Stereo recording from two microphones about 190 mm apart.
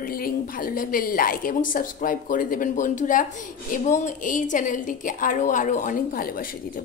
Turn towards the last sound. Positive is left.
turn(degrees=45)  # may be behind; listen again after turning